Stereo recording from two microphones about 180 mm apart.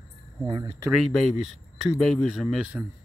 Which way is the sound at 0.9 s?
Centre (ahead or behind).